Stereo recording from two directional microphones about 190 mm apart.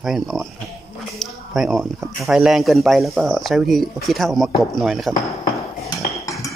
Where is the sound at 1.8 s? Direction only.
5° right (ahead or behind).